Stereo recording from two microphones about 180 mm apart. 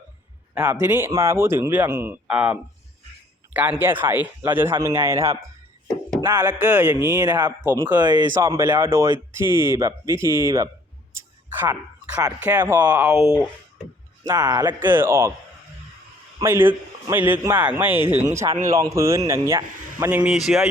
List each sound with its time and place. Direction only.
0.6 s a man's voice: 15° right (ahead or behind)
7.9 s a man's voice: 25° right (ahead or behind)
11.1 s a sound: 15° right (ahead or behind)
12.4 s a man's voice: 10° right (ahead or behind)
14.3 s speech: 20° right (ahead or behind)
14.8 s a man's voice: 10° right (ahead or behind)
16.4 s a man's voice: 15° right (ahead or behind)